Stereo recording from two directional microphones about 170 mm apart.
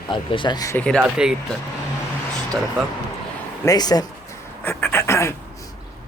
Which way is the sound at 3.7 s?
25° left (ahead or behind).